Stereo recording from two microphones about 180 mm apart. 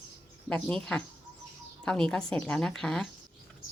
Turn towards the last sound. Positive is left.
turn(degrees=5)  # may be behind; listen again after turning